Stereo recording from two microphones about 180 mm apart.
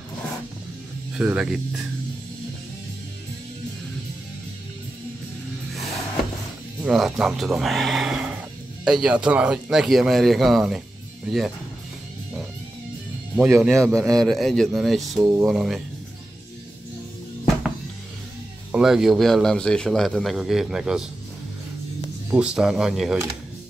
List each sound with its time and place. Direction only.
1.1 s a man's voice: 5° right (ahead or behind)
6.8 s a man's voice: 5° right (ahead or behind)
13.4 s a man's voice: 5° right (ahead or behind)
13.8 s a man's voice: 15° right (ahead or behind)
14.1 s a man's voice: centre (ahead or behind)
18.7 s a man's voice: 5° right (ahead or behind)
22.3 s a man's voice: 5° right (ahead or behind)